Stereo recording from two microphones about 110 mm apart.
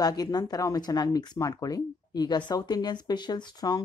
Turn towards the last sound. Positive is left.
turn(degrees=40)  # may be behind; listen again after turning